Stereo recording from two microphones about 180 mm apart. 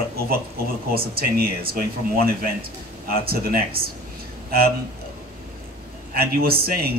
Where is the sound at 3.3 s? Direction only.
55° right (ahead or behind).